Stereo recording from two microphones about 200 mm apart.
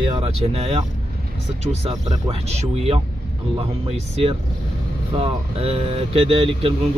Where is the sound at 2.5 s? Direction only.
30° right (ahead or behind).